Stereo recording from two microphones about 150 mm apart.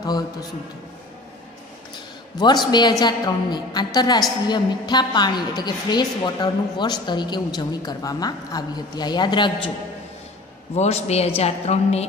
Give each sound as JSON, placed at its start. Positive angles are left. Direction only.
{"t": 2.3, "sound": "a woman's voice", "side_deg": 30}
{"t": 10.7, "sound": "a man's voice", "side_deg": 45}